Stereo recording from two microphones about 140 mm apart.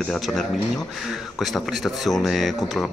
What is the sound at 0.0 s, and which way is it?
A man's voice, centre (ahead or behind).